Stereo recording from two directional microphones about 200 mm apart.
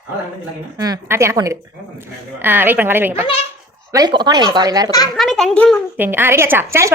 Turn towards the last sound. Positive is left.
turn(degrees=-10)  # may be behind; listen again after turning